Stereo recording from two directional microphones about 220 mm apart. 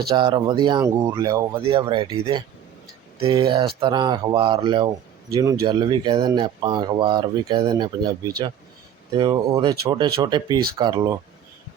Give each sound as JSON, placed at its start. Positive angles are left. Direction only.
{"t": 0.1, "sound": "speech", "side_deg": -20}